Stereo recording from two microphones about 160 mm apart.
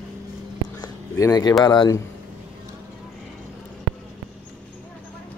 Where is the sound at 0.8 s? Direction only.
20° left (ahead or behind).